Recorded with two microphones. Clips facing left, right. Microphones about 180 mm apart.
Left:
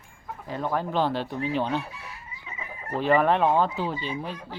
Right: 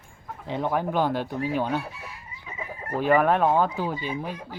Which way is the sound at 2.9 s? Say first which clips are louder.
Right 1 dB; 10° right (ahead or behind).